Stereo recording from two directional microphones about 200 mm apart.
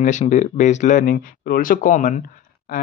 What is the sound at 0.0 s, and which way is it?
Speech, 35° left (ahead or behind).